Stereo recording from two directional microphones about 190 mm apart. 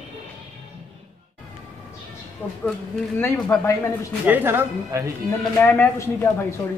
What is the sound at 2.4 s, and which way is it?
Speech, 10° left (ahead or behind).